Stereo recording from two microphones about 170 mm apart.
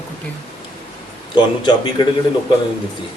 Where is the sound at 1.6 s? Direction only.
25° left (ahead or behind).